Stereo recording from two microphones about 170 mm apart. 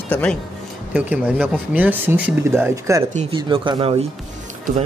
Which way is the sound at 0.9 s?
10° right (ahead or behind).